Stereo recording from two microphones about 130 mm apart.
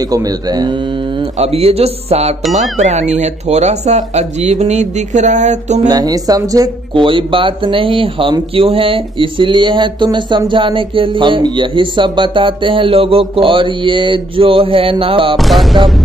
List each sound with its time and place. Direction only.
0.1 s speech: 30° right (ahead or behind)
1.4 s mantra: 50° right (ahead or behind)
2.5 s speech: 60° right (ahead or behind)
5.9 s speech: 30° right (ahead or behind)
6.9 s speech: 40° right (ahead or behind)
13.4 s mantra: 40° right (ahead or behind)
15.3 s music: centre (ahead or behind)